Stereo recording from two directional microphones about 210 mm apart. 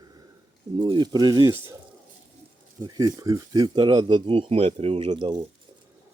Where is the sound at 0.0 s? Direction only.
20° right (ahead or behind).